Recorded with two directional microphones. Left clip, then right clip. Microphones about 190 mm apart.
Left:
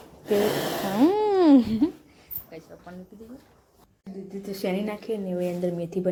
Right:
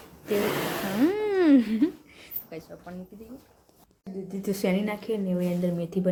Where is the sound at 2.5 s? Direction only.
45° right (ahead or behind).